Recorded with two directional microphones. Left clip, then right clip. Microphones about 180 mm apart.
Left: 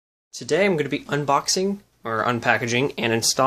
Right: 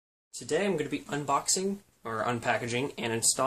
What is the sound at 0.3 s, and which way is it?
Speech, 35° left (ahead or behind).